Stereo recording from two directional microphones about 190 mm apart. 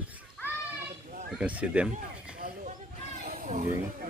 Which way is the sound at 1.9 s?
40° right (ahead or behind).